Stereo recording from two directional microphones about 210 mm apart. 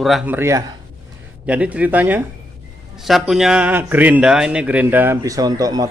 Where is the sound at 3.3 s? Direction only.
Centre (ahead or behind).